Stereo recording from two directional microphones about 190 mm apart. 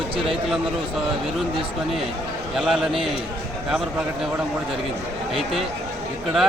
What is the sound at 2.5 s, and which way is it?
Speech, centre (ahead or behind).